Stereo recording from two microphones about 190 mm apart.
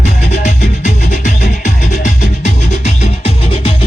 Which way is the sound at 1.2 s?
40° left (ahead or behind).